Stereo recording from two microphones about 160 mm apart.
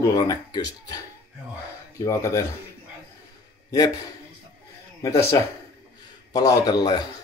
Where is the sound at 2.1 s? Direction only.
20° left (ahead or behind).